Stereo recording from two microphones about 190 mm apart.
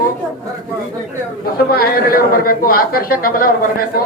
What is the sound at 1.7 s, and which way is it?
A man's voice, 50° left (ahead or behind).